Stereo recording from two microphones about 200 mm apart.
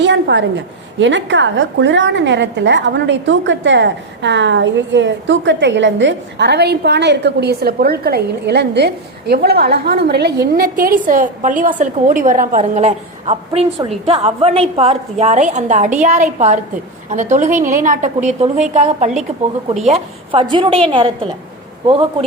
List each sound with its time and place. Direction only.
0.0 s a woman's voice: 60° right (ahead or behind); by 21.1 s 25° right (ahead or behind)